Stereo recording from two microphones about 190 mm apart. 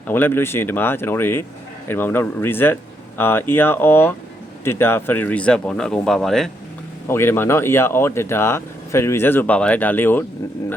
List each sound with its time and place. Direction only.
0.1 s speech: 10° left (ahead or behind)
7.1 s speech: 10° left (ahead or behind)